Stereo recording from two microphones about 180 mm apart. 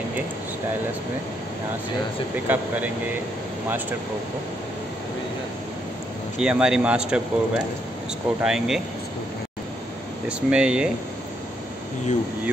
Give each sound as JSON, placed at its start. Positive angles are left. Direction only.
{"t": 2.3, "sound": "speech", "side_deg": -10}
{"t": 6.4, "sound": "speech", "side_deg": -5}
{"t": 10.2, "sound": "speech", "side_deg": -5}